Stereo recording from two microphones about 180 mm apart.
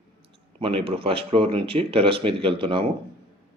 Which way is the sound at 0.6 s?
30° right (ahead or behind).